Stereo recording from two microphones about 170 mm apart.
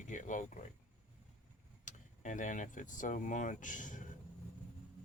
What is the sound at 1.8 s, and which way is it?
Speech, 45° left (ahead or behind).